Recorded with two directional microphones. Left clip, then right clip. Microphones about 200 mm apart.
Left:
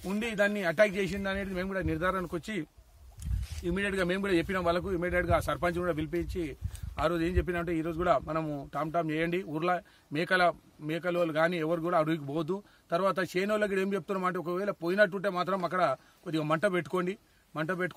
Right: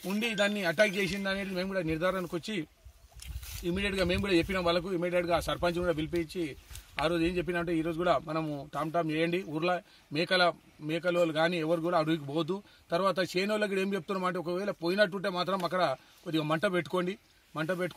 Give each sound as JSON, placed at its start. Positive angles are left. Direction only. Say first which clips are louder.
{"t": 0.0, "sound": "a man's voice", "louder": "even", "side_deg": 10}
{"t": 3.6, "sound": "a man's voice", "louder": "even", "side_deg": 5}
{"t": 16.3, "sound": "speech", "louder": "left 1 dB", "side_deg": 25}
{"t": 16.8, "sound": "speech", "louder": "even", "side_deg": 5}
{"t": 17.6, "sound": "speech", "louder": "even", "side_deg": 25}